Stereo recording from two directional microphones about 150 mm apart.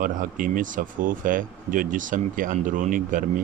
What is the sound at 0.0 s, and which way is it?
Speech, 65° right (ahead or behind).